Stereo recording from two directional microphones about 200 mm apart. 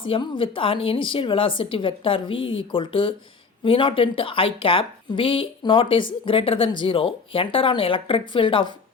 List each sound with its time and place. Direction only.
0.0 s speech: 25° left (ahead or behind)